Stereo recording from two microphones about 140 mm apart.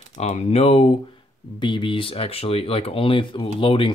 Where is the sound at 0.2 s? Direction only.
50° left (ahead or behind).